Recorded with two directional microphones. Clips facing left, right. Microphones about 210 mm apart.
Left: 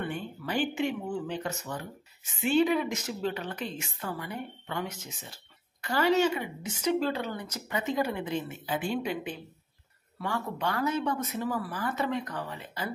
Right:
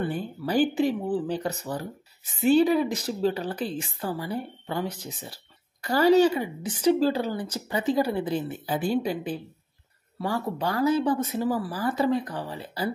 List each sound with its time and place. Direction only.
0.0 s speech: 35° right (ahead or behind)